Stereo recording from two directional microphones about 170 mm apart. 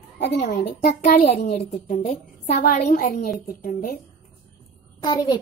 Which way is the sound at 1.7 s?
45° left (ahead or behind).